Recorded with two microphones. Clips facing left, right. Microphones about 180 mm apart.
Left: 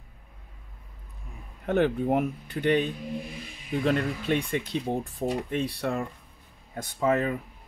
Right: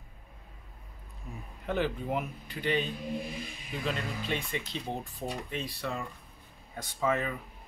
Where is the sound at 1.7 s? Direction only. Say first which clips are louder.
Left 7 dB; 55° left (ahead or behind).